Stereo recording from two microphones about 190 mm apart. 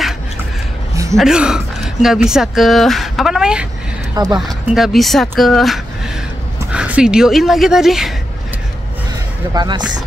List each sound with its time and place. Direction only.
1.1 s speech: 5° right (ahead or behind)
4.1 s speech: 20° right (ahead or behind)
4.5 s speech: centre (ahead or behind)
9.5 s speech: 20° right (ahead or behind)